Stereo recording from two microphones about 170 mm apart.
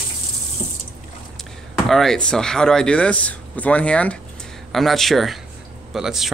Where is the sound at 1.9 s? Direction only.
Centre (ahead or behind).